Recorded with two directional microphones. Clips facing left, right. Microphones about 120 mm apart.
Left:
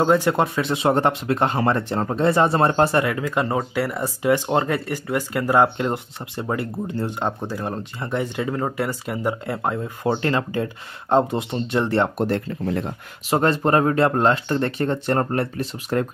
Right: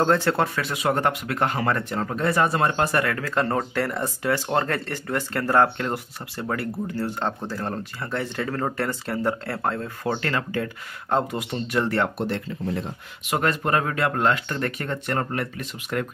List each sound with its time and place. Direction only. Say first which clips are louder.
0.0 s speech: left 3 dB; 15° left (ahead or behind)
12.2 s speech: left 5 dB; 50° left (ahead or behind)
13.3 s speech: left 5 dB; 30° left (ahead or behind)